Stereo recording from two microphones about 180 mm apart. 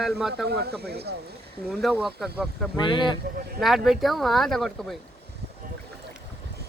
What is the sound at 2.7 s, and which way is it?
Speech, 25° left (ahead or behind).